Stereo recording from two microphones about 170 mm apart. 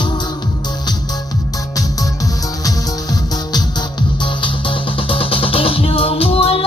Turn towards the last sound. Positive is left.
turn(degrees=35)  # may be behind; listen again after turning